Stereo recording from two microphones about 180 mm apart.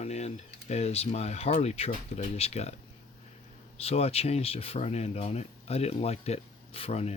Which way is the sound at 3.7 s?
35° left (ahead or behind).